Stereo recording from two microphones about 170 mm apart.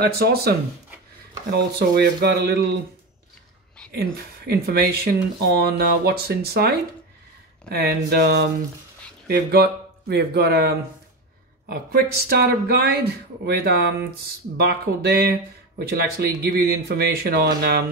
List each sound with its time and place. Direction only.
0.0 s speech: 65° right (ahead or behind)
1.8 s speech: 75° right (ahead or behind)
3.9 s speech: 65° right (ahead or behind)